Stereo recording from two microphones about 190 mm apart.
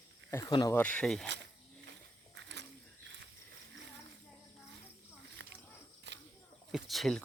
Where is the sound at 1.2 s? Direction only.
65° right (ahead or behind).